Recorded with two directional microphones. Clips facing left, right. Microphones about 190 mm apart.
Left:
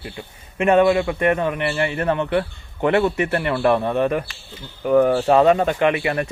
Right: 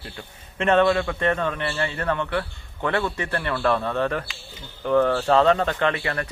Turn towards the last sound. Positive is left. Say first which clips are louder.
# left 5 dB
turn(degrees=15)  # may be behind; listen again after turning